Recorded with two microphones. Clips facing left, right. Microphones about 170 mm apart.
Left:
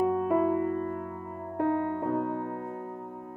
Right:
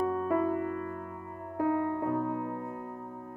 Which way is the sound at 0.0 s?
20° left (ahead or behind).